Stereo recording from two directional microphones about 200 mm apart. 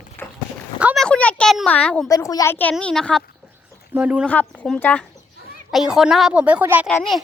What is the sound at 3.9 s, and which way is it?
Speech, 5° right (ahead or behind).